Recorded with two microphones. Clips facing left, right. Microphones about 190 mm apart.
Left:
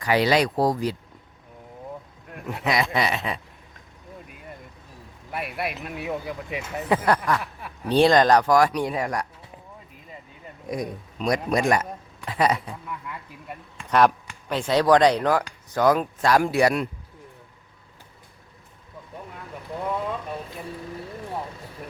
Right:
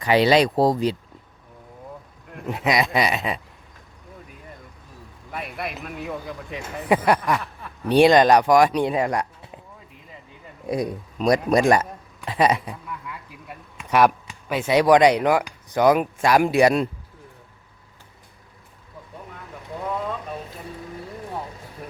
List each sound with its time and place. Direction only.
0.0 s speech: 25° right (ahead or behind)
2.5 s speech: 15° right (ahead or behind)
5.3 s speech: 5° left (ahead or behind)
6.8 s speech: 15° right (ahead or behind)
10.7 s speech: 35° right (ahead or behind)
12.3 s speech: 20° right (ahead or behind)
13.5 s speech: 5° right (ahead or behind); by 16.9 s 25° right (ahead or behind)